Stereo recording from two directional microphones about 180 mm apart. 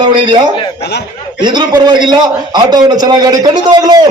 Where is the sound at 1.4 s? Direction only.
25° right (ahead or behind).